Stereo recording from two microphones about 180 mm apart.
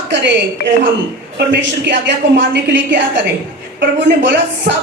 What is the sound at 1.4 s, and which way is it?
A woman's voice, 80° right.